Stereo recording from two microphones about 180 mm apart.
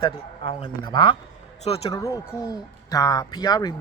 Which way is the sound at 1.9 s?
15° left (ahead or behind).